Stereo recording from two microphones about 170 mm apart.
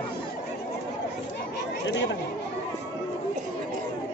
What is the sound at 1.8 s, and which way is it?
Chatter, 90° left.